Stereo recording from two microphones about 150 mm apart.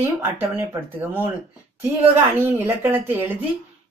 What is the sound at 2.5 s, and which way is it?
Speech, 15° right (ahead or behind).